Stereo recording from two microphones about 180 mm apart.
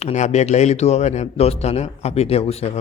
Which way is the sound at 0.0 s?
40° left (ahead or behind).